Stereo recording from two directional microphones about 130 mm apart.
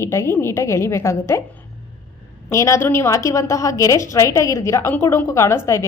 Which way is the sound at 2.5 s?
25° left (ahead or behind).